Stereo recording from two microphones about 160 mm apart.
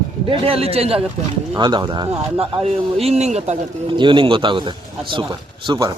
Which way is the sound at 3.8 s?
30° right (ahead or behind).